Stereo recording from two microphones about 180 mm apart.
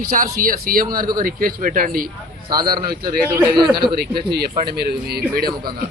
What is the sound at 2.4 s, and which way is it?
Speech, 20° right (ahead or behind).